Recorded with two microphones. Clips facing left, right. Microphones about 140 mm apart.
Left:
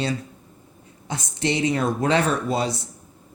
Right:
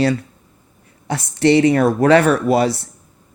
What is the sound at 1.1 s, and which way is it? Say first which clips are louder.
Speech: right 11 dB; 65° right (ahead or behind).